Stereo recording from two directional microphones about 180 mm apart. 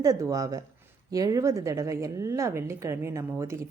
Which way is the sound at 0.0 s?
20° right (ahead or behind).